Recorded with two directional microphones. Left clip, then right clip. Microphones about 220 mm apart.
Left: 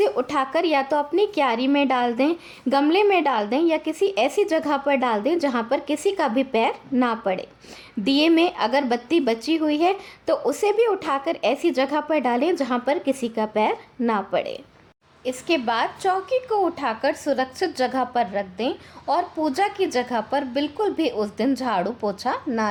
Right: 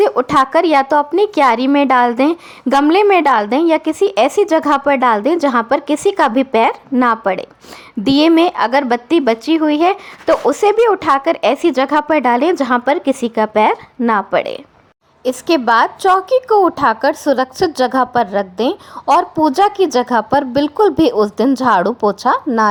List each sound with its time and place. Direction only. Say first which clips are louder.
0.0 s a woman's voice: right 9 dB; 20° right (ahead or behind)